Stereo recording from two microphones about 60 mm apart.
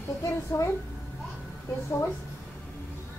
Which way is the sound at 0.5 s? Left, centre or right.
Left.